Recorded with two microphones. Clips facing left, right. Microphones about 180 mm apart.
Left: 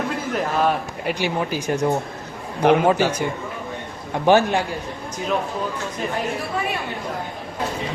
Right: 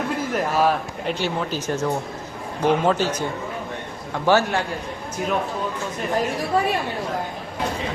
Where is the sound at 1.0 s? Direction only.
10° left (ahead or behind).